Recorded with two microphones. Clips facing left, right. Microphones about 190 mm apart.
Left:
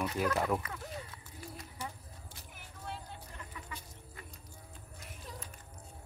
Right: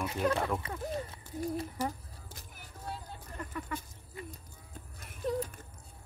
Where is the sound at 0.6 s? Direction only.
25° right (ahead or behind).